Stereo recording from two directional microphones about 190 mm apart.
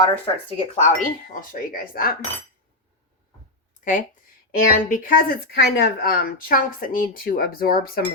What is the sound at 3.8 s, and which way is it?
Speech, 45° left (ahead or behind).